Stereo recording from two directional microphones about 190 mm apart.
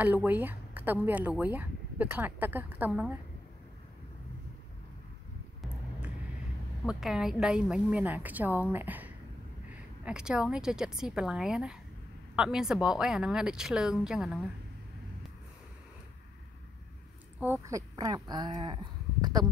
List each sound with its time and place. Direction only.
0.0 s speech: 10° right (ahead or behind)
5.6 s vehicle: 5° right (ahead or behind)
6.9 s a woman's voice: 5° right (ahead or behind)
17.4 s speech: 15° right (ahead or behind)